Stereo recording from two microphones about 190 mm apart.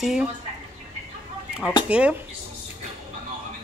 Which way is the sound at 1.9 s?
5° right (ahead or behind).